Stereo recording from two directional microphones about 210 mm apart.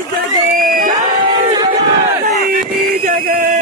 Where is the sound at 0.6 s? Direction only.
40° right (ahead or behind).